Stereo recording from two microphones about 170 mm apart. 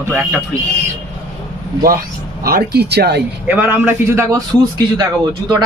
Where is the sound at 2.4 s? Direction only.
65° right (ahead or behind).